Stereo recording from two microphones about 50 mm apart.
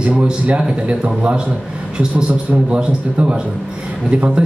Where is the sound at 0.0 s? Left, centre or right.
Right.